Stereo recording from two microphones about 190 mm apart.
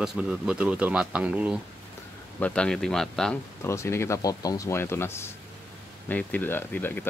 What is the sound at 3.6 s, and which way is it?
Speech, 15° left (ahead or behind).